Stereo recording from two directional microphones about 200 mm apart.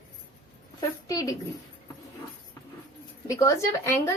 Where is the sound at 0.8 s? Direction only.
15° left (ahead or behind).